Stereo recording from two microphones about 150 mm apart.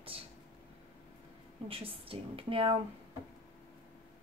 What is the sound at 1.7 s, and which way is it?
A woman's voice, 40° right (ahead or behind).